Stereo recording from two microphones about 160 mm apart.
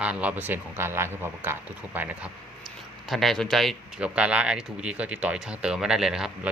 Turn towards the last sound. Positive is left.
turn(degrees=-5)  # may be behind; listen again after turning